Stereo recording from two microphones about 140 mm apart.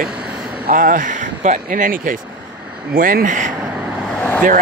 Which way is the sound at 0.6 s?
85° right.